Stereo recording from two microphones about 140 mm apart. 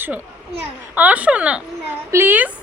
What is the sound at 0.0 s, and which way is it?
Speech, 10° right (ahead or behind).